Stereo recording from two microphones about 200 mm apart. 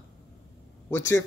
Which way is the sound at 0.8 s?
15° left (ahead or behind).